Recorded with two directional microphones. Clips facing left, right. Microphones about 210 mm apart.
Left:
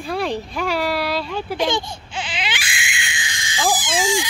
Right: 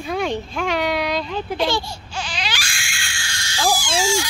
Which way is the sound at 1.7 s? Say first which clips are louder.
Left 1 dB; 20° left (ahead or behind).